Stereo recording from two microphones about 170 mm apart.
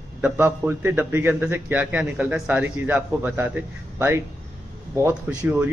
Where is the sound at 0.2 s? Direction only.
15° right (ahead or behind).